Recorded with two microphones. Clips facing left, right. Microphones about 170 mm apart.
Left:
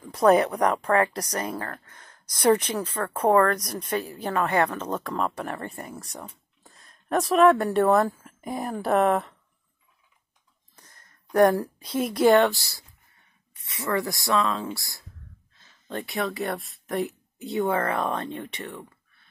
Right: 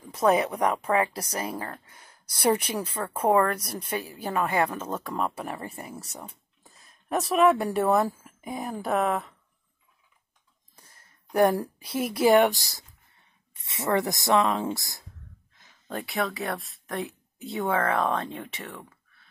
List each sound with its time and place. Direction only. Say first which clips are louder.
0.1 s speech: left 4 dB; centre (ahead or behind)
10.8 s speech: left 2 dB; 10° right (ahead or behind)
15.6 s speech: left 1 dB; 5° right (ahead or behind)